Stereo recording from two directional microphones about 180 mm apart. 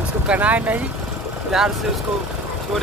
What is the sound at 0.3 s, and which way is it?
Speech, 10° right (ahead or behind).